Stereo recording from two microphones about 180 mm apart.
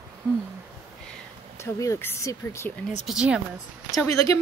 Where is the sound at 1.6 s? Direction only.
15° left (ahead or behind).